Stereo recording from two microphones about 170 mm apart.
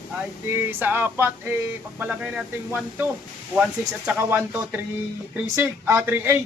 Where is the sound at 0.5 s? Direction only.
10° right (ahead or behind).